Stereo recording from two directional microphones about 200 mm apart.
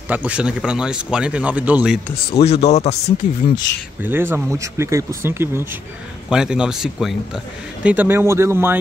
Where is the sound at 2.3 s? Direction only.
30° left (ahead or behind).